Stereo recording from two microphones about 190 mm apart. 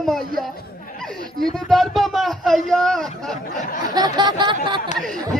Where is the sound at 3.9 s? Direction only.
20° right (ahead or behind).